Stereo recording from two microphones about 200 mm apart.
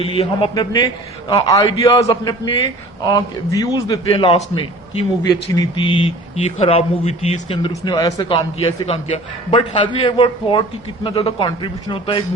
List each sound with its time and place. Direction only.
0.0 s a man's voice: 25° left (ahead or behind)
5.2 s a man's voice: 20° left (ahead or behind)
7.7 s a man's voice: 20° left (ahead or behind)